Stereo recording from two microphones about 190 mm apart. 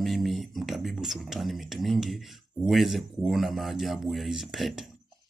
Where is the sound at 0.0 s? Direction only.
Centre (ahead or behind).